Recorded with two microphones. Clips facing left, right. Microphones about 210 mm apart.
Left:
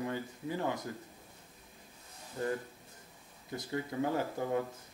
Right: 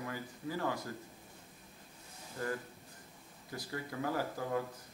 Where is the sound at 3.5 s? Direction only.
25° left (ahead or behind).